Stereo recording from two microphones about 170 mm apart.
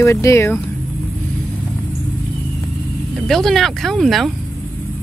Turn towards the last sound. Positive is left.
turn(degrees=0)  # may be behind; listen again after turning